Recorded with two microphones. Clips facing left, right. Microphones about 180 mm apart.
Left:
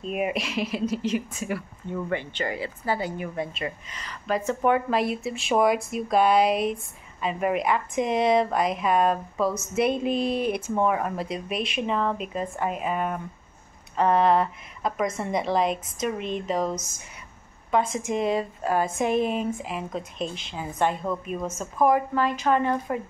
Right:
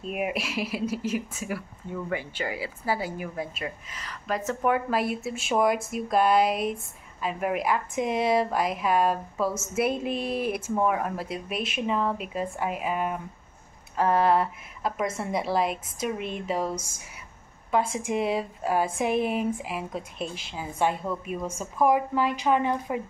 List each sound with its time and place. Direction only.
0.0 s a woman's voice: 5° right (ahead or behind)